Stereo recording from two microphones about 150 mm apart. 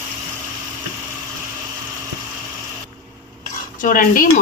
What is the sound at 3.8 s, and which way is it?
Speech, 65° left (ahead or behind).